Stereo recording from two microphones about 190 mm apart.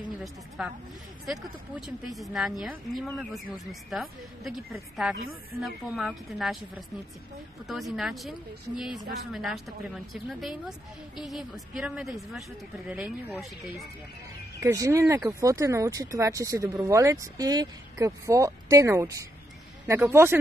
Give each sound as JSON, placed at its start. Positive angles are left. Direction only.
{"t": 0.6, "sound": "speech", "side_deg": -5}
{"t": 14.6, "sound": "speech", "side_deg": -15}